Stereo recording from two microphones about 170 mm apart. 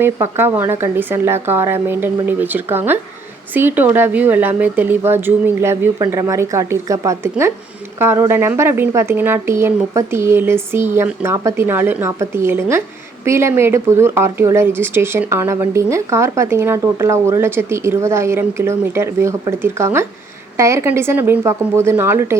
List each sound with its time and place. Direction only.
0.0 s speech: 15° right (ahead or behind)